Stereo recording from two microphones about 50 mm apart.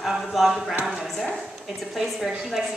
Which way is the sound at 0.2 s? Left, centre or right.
Centre.